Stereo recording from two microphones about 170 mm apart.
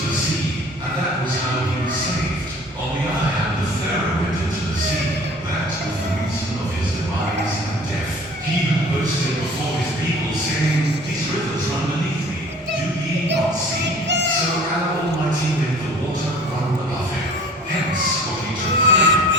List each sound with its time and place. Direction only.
18.9 s music: 90° right